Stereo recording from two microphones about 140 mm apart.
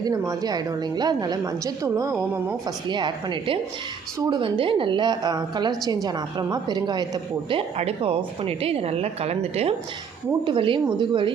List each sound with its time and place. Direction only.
0.0 s a woman's voice: 25° right (ahead or behind)
2.8 s a woman's voice: 35° right (ahead or behind)
7.8 s speech: 45° right (ahead or behind)
10.4 s a woman's voice: 35° right (ahead or behind)